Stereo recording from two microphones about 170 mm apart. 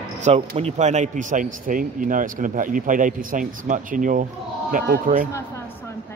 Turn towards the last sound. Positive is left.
turn(degrees=-55)  # may be behind; listen again after turning